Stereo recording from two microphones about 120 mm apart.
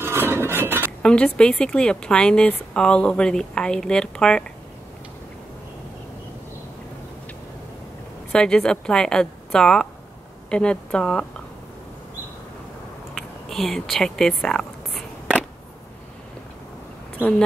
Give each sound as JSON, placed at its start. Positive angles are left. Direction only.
{"t": 0.0, "sound": "chink", "side_deg": -20}
{"t": 1.0, "sound": "a woman's voice", "side_deg": 10}
{"t": 8.3, "sound": "a woman's voice", "side_deg": 5}
{"t": 13.1, "sound": "a sound", "side_deg": 0}